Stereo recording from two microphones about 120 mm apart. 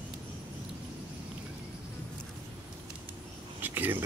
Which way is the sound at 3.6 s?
15° right (ahead or behind).